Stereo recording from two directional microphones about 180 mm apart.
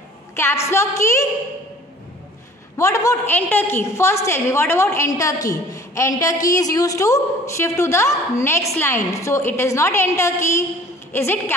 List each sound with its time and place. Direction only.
0.7 s a woman's voice: 15° left (ahead or behind)
2.8 s a woman's voice: 15° left (ahead or behind)